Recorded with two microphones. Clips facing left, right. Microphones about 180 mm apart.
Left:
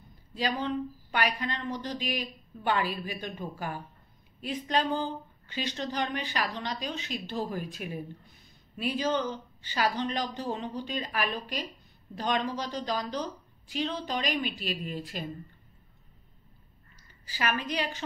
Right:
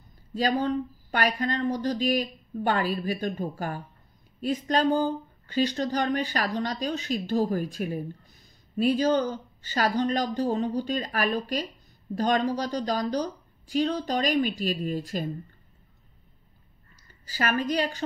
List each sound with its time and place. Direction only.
0.3 s speech: 45° right (ahead or behind)
17.3 s speech: 45° right (ahead or behind)